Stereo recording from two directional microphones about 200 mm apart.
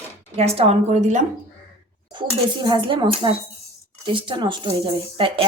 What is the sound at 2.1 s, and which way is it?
Speech, 25° right (ahead or behind).